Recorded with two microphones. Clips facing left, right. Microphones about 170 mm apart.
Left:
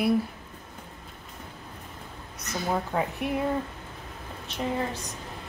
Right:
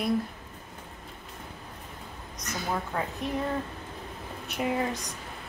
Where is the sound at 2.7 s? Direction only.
20° left (ahead or behind).